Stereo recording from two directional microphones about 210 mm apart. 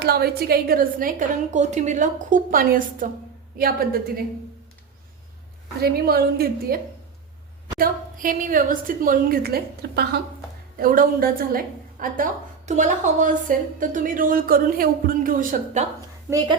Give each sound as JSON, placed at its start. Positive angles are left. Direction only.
{"t": 0.0, "sound": "a woman's voice", "side_deg": -50}
{"t": 5.8, "sound": "a woman's voice", "side_deg": -45}
{"t": 7.8, "sound": "a woman's voice", "side_deg": -40}